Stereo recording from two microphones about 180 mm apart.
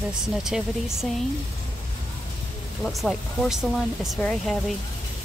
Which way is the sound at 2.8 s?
Centre (ahead or behind).